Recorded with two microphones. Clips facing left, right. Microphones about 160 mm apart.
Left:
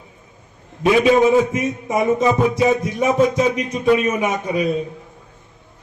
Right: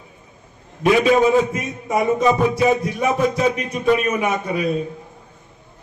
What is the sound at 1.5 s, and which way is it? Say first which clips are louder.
Music: left 2 dB; 20° left (ahead or behind).